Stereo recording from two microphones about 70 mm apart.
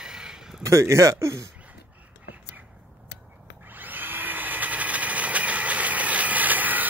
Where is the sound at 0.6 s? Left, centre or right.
Right.